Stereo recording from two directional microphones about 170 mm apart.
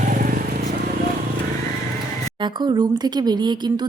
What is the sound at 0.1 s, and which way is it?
Vehicle, 50° right (ahead or behind).